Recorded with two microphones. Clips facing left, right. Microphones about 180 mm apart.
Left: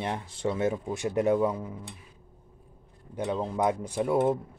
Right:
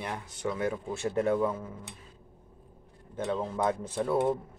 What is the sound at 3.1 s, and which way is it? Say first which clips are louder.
Speech: left 2 dB; 15° left (ahead or behind).